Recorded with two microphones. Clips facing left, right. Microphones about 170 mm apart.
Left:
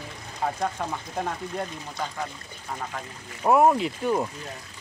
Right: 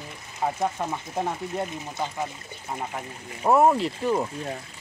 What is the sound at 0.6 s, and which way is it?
Speech, 10° right (ahead or behind).